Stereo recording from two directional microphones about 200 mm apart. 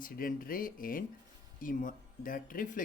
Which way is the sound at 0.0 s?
45° left (ahead or behind).